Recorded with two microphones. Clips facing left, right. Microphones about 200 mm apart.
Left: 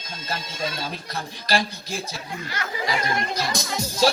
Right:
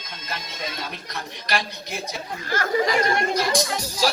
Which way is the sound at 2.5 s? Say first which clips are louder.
Right 7 dB; 45° right (ahead or behind).